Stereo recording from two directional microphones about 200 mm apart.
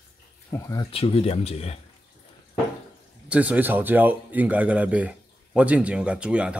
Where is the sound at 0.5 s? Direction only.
15° left (ahead or behind).